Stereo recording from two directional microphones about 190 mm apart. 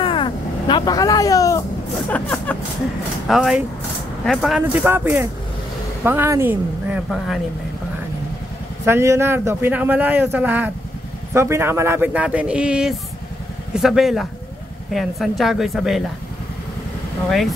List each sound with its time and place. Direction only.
0.0 s vehicle: 25° left (ahead or behind)
2.0 s speech: 10° left (ahead or behind)
3.3 s a man's voice: centre (ahead or behind)
8.8 s a man's voice: 15° right (ahead or behind)